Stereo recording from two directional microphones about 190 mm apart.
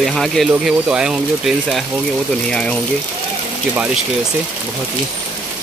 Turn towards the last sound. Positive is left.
turn(degrees=-10)  # may be behind; listen again after turning